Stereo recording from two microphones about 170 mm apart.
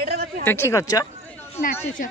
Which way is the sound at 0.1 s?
70° right (ahead or behind).